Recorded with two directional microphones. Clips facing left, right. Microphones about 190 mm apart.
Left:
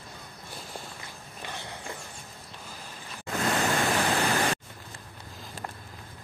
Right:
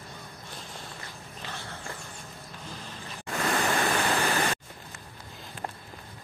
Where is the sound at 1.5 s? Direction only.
15° left (ahead or behind).